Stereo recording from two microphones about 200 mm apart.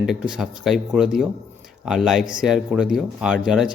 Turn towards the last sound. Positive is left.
turn(degrees=-5)  # may be behind; listen again after turning